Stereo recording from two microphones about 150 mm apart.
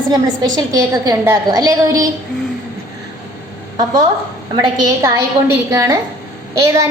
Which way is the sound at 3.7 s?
30° right (ahead or behind).